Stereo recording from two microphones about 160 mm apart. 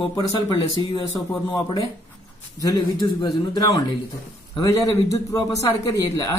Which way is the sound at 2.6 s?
20° left (ahead or behind).